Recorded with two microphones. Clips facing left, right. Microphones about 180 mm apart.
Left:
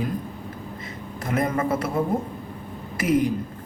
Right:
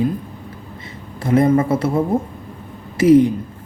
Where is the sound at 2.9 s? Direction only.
25° right (ahead or behind).